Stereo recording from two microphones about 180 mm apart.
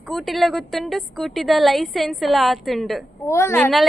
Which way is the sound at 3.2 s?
15° left (ahead or behind).